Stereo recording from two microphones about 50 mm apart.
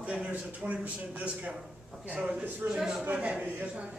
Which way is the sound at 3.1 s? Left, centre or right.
Right.